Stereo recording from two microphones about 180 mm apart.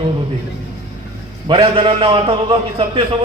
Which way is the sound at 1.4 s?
30° right (ahead or behind).